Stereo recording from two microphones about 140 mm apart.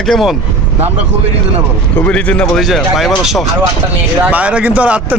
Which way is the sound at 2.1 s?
10° left (ahead or behind).